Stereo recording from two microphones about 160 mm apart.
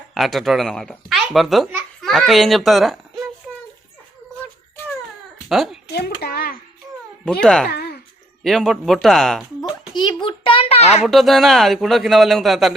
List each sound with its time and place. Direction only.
0.1 s a child's voice: centre (ahead or behind)
5.5 s a woman's voice: centre (ahead or behind)
5.9 s a child's voice: 75° left (ahead or behind)
7.4 s a man's voice: 5° left (ahead or behind)
7.7 s a sound: 75° left (ahead or behind)
8.4 s a man's voice: centre (ahead or behind)
9.9 s a child's voice: 30° left (ahead or behind)
11.0 s a man's voice: centre (ahead or behind)